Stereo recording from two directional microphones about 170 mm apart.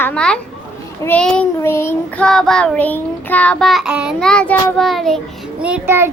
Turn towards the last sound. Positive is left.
turn(degrees=-15)  # may be behind; listen again after turning